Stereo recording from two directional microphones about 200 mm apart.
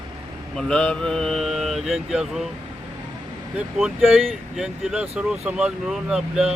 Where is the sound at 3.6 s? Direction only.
Centre (ahead or behind).